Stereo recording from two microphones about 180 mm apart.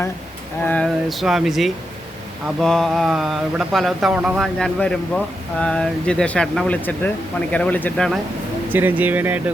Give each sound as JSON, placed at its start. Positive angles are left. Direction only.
{"t": 0.6, "sound": "speech", "side_deg": 5}
{"t": 8.7, "sound": "speech", "side_deg": -10}